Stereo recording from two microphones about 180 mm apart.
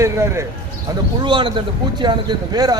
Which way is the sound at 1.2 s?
25° right (ahead or behind).